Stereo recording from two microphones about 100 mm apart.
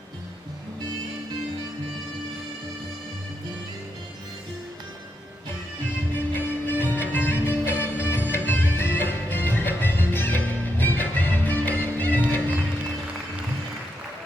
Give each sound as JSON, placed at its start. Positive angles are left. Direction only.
{"t": 6.1, "sound": "music", "side_deg": 20}